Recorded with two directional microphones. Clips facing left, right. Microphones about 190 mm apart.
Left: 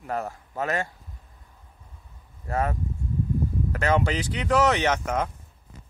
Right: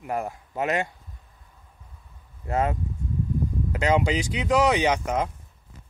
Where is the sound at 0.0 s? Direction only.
10° right (ahead or behind).